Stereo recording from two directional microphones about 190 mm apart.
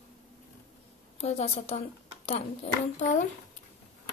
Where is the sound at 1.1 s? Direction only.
35° left (ahead or behind).